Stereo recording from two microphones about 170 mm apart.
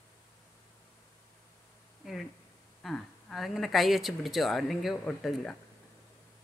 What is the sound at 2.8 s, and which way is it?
Speech, centre (ahead or behind).